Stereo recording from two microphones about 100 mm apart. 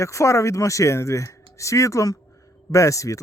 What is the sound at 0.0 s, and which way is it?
Speech, 30° left (ahead or behind).